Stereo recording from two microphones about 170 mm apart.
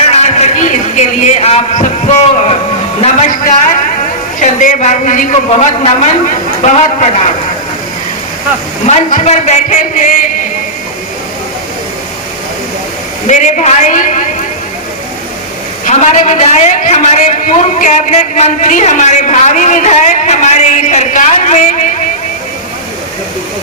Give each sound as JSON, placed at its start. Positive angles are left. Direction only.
{"t": 0.1, "sound": "a sound", "side_deg": 40}
{"t": 3.0, "sound": "a man's voice", "side_deg": 40}
{"t": 8.9, "sound": "a man's voice", "side_deg": 45}
{"t": 13.2, "sound": "a man's voice", "side_deg": 45}
{"t": 15.9, "sound": "a man's voice", "side_deg": 45}